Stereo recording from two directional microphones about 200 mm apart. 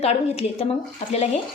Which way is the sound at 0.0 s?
30° left (ahead or behind).